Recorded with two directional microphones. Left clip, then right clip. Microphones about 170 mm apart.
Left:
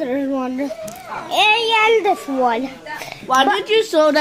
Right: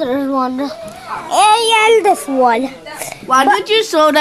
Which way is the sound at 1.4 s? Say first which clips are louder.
Right 4 dB; 20° right (ahead or behind).